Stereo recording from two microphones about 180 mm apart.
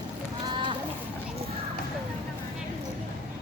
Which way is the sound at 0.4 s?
25° right (ahead or behind).